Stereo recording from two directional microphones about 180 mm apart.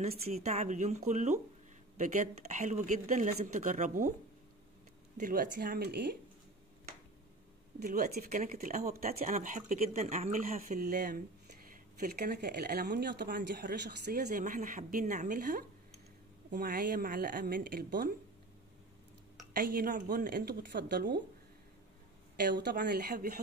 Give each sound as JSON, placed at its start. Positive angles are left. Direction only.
{"t": 0.0, "sound": "speech", "side_deg": -40}
{"t": 2.5, "sound": "speech", "side_deg": -45}
{"t": 5.1, "sound": "speech", "side_deg": -50}
{"t": 7.8, "sound": "speech", "side_deg": -55}
{"t": 14.2, "sound": "speech", "side_deg": -45}
{"t": 19.5, "sound": "speech", "side_deg": -55}
{"t": 22.4, "sound": "speech", "side_deg": -70}